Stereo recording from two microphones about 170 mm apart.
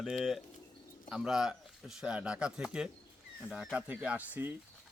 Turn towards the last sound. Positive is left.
turn(degrees=-10)  # may be behind; listen again after turning